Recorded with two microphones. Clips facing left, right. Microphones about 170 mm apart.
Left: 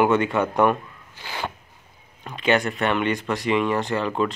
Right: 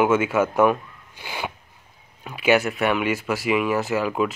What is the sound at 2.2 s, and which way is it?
Speech, 5° right (ahead or behind).